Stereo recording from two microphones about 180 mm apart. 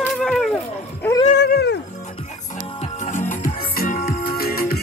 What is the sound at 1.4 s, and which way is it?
Music, 70° left (ahead or behind).